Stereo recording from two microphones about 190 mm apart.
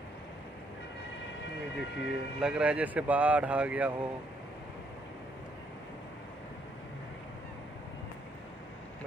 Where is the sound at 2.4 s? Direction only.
5° right (ahead or behind).